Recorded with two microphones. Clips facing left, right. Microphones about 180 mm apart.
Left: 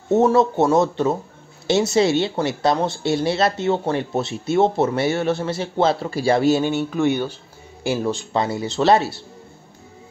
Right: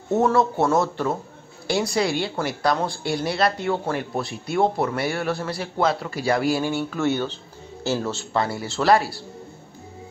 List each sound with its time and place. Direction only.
0.1 s a woman's voice: 20° left (ahead or behind)